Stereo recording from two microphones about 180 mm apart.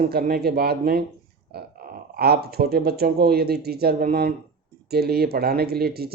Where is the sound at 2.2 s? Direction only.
60° right (ahead or behind).